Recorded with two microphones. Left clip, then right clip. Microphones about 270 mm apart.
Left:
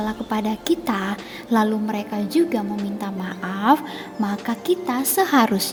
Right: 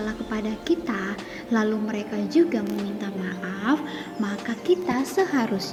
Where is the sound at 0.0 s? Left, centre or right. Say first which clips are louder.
Left 5 dB; left.